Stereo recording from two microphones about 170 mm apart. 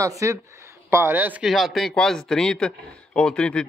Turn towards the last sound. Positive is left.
turn(degrees=5)  # may be behind; listen again after turning